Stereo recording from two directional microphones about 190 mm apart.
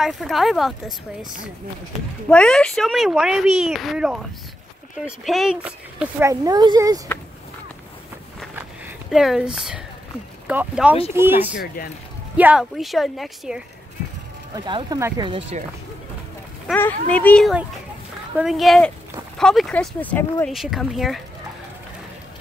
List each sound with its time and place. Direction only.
0.0 s speech: centre (ahead or behind)
2.2 s speech: 5° left (ahead or behind); by 7.0 s 20° right (ahead or behind)
8.5 s a sound: 5° right (ahead or behind)
10.4 s speech: 10° right (ahead or behind)
11.6 s speech: 50° left (ahead or behind)
12.4 s speech: 5° right (ahead or behind)
14.5 s speech: 25° right (ahead or behind)
15.2 s speech: 30° right (ahead or behind)
16.7 s speech: 10° left (ahead or behind)
20.5 s speech: centre (ahead or behind)